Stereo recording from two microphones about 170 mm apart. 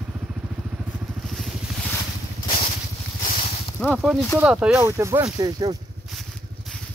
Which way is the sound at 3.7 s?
Centre (ahead or behind).